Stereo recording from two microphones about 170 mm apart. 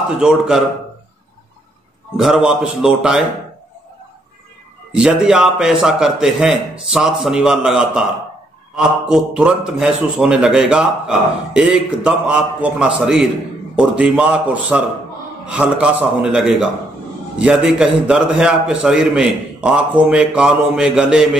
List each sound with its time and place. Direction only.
0.2 s a man's voice: 5° right (ahead or behind)
2.1 s a man's voice: centre (ahead or behind)
4.9 s a man's voice: 5° right (ahead or behind)